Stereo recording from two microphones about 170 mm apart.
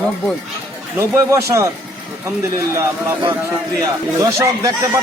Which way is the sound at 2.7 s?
20° right (ahead or behind).